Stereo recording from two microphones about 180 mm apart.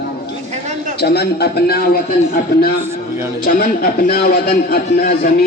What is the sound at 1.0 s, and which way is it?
Speech, 65° left (ahead or behind).